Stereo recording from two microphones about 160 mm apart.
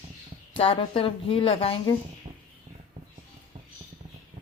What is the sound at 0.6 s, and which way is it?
A woman's voice, 35° left (ahead or behind).